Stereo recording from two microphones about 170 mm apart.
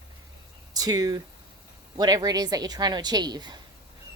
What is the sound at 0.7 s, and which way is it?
A woman's voice, 20° right (ahead or behind).